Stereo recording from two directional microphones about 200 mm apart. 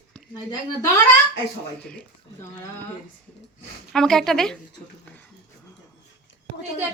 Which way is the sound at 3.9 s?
5° left (ahead or behind).